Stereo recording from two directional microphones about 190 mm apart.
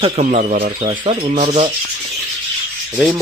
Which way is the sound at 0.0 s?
40° right (ahead or behind).